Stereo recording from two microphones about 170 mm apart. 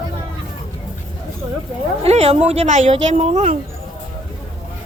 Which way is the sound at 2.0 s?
40° right (ahead or behind).